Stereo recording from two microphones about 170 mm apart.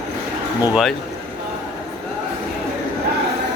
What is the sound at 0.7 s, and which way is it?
Speech, centre (ahead or behind).